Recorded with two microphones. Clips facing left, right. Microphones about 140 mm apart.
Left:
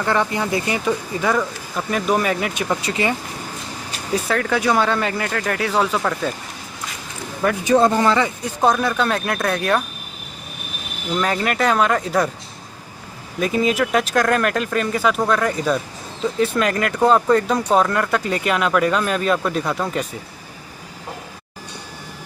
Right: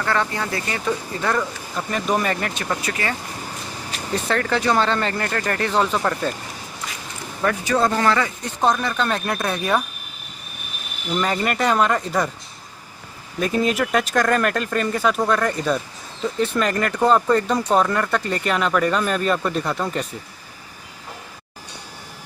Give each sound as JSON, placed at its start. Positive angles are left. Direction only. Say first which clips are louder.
{"t": 0.0, "sound": "speech", "louder": "left 3 dB", "side_deg": 15}
{"t": 2.8, "sound": "speech", "louder": "left 4 dB", "side_deg": 20}
{"t": 4.1, "sound": "speech", "louder": "left 2 dB", "side_deg": 5}
{"t": 7.6, "sound": "speech", "louder": "left 5 dB", "side_deg": 20}
{"t": 8.5, "sound": "speech", "louder": "left 2 dB", "side_deg": 5}
{"t": 11.1, "sound": "speech", "louder": "left 1 dB", "side_deg": 0}
{"t": 13.4, "sound": "speech", "louder": "left 2 dB", "side_deg": 0}